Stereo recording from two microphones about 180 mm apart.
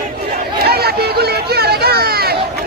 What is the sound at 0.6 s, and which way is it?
Chatter, 60° right (ahead or behind).